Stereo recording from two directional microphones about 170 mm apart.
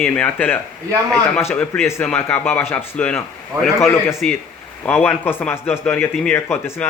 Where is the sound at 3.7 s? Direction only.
15° left (ahead or behind).